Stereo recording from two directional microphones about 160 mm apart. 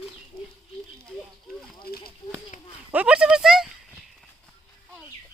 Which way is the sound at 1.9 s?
75° left (ahead or behind).